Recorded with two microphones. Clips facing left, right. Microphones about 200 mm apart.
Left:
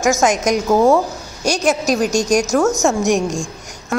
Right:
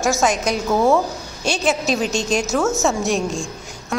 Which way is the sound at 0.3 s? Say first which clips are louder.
Left 4 dB; 45° left (ahead or behind).